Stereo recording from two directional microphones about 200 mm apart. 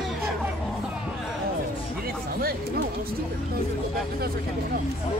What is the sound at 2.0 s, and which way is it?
Speech, 50° right (ahead or behind).